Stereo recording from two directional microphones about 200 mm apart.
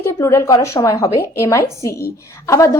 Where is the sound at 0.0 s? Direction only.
15° left (ahead or behind).